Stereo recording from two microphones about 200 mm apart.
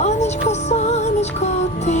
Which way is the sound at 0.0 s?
35° left (ahead or behind).